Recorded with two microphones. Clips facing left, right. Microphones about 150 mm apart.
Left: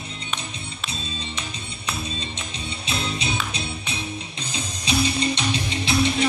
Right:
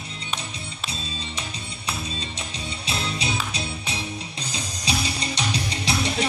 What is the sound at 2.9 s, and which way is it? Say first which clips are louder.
Music: left 1 dB; 35° right (ahead or behind).